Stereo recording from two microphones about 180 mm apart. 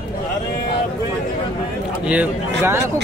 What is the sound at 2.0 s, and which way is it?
Speech, 5° right (ahead or behind).